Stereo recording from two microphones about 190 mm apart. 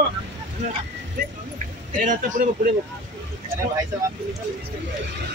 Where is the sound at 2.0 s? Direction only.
45° right (ahead or behind).